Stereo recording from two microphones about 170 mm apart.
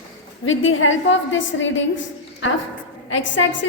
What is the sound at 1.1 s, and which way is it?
A woman's voice, 90° left.